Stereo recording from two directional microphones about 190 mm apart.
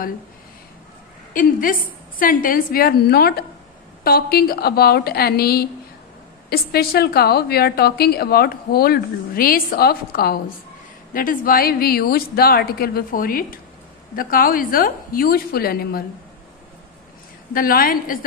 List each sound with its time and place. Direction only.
1.3 s a woman's voice: 45° left (ahead or behind)
17.6 s a woman's voice: 50° left (ahead or behind)